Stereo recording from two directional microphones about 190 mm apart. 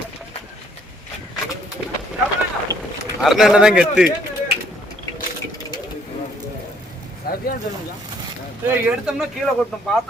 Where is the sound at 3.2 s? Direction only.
Centre (ahead or behind).